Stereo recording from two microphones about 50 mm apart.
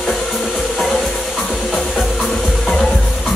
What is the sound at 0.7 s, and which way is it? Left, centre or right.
Music, centre.